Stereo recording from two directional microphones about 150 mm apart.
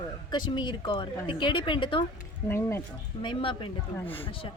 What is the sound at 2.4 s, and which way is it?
Speech, 15° left (ahead or behind).